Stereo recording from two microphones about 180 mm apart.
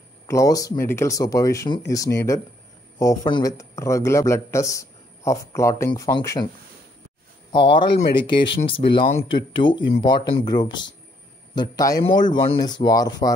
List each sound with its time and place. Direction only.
0.3 s speech: 20° left (ahead or behind)
7.5 s speech: 30° left (ahead or behind)
7.9 s speech: 60° left (ahead or behind)
8.6 s speech: 30° left (ahead or behind)